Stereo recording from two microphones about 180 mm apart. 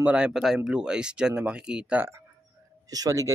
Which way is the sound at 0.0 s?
5° right (ahead or behind).